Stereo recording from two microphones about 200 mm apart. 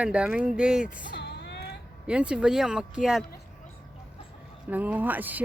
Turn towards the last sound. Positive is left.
turn(degrees=-10)  # may be behind; listen again after turning